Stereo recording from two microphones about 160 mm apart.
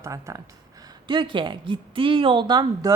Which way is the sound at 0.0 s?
20° right (ahead or behind).